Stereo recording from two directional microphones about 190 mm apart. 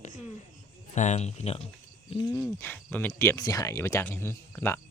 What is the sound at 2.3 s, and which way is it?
Speech, 15° left (ahead or behind).